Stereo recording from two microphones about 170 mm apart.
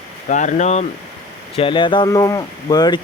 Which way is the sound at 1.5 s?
30° left (ahead or behind).